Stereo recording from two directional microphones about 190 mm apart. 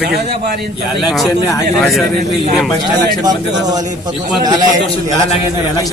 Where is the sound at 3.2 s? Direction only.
20° right (ahead or behind).